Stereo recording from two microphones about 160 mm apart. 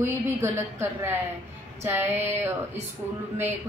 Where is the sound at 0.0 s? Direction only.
15° right (ahead or behind).